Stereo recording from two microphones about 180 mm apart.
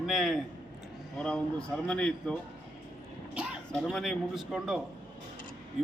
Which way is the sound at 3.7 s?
5° left (ahead or behind).